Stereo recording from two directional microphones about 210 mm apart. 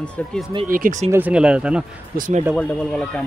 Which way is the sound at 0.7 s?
40° right (ahead or behind).